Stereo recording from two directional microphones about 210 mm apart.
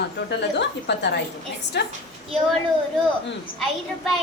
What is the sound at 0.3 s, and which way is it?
A woman's voice, 55° left (ahead or behind).